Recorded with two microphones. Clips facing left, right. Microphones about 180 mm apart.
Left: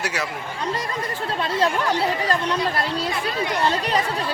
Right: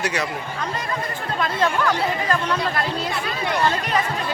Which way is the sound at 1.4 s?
30° left (ahead or behind).